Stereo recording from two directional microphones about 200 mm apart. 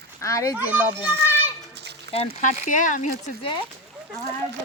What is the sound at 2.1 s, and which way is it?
Speech, 35° left (ahead or behind).